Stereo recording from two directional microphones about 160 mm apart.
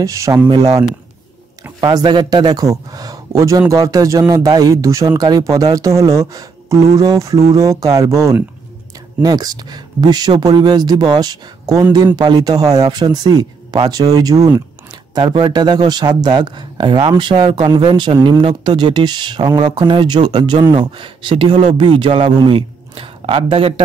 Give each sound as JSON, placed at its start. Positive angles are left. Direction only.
{"t": 0.0, "sound": "speech", "side_deg": -20}